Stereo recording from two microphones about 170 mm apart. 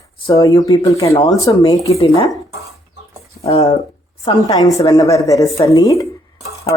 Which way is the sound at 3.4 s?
40° left (ahead or behind).